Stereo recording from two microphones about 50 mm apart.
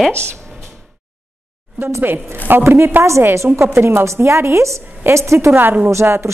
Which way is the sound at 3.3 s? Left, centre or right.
Right.